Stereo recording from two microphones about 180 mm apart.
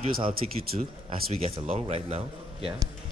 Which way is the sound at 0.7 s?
40° right (ahead or behind).